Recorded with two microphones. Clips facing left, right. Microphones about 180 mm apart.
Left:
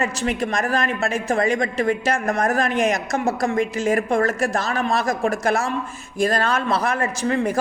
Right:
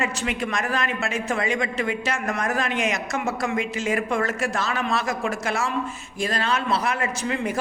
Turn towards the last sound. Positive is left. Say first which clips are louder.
# left 5 dB
turn(degrees=40)  # may be behind; listen again after turning